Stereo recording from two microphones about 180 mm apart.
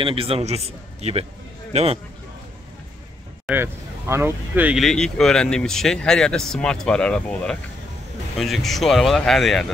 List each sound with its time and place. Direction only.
0.0 s a man's voice: 30° right (ahead or behind)
3.4 s speech: 10° right (ahead or behind)